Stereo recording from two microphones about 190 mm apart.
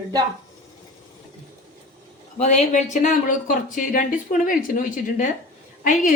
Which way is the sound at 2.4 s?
40° left (ahead or behind).